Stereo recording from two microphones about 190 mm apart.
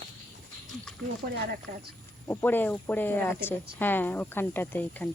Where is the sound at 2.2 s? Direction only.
10° left (ahead or behind).